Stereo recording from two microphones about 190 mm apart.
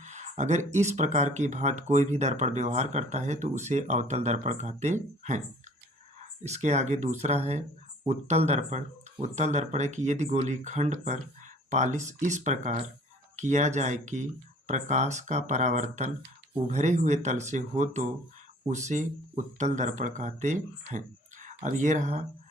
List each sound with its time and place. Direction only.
0.0 s a sound: 40° right (ahead or behind)
0.7 s speech: 35° right (ahead or behind)
6.4 s speech: 35° right (ahead or behind)